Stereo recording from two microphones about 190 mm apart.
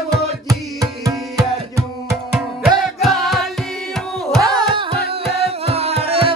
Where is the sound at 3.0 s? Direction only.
Centre (ahead or behind).